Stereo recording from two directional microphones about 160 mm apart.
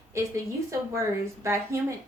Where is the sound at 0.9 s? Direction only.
20° right (ahead or behind).